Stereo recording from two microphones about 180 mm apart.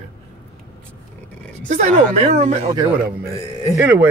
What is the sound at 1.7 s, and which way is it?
Speech, 40° right (ahead or behind).